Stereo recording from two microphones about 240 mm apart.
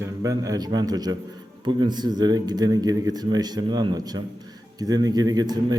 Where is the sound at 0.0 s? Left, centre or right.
Centre.